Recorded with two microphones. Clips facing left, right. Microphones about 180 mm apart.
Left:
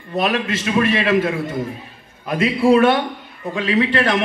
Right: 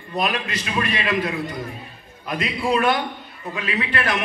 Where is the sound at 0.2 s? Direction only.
Centre (ahead or behind).